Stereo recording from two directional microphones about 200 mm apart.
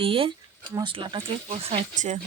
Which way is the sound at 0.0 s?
25° right (ahead or behind).